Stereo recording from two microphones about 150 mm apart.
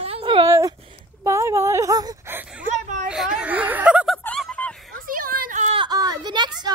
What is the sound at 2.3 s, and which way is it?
Speech, 10° right (ahead or behind).